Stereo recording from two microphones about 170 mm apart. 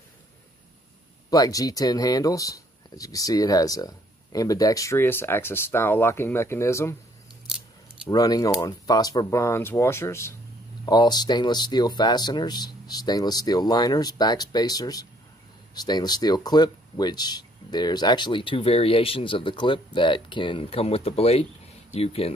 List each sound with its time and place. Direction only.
1.3 s speech: 20° left (ahead or behind)
8.1 s speech: 20° left (ahead or behind)